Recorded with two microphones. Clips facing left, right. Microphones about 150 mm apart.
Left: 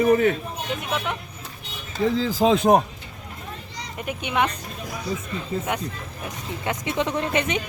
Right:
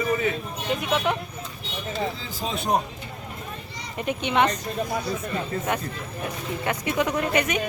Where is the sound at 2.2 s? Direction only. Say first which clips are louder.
Left 11 dB; 90° left.